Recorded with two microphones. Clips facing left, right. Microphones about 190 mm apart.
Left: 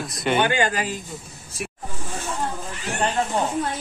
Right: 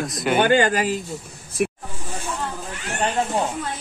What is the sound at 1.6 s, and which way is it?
Snake, 55° right (ahead or behind).